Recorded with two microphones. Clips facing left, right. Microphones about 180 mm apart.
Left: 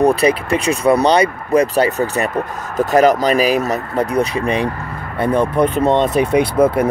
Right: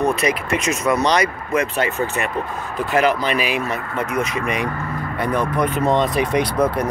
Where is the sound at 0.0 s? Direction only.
35° left (ahead or behind).